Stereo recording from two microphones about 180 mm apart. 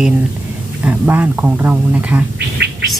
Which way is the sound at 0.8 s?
10° right (ahead or behind).